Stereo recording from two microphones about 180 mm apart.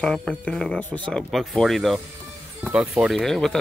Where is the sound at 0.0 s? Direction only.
5° left (ahead or behind).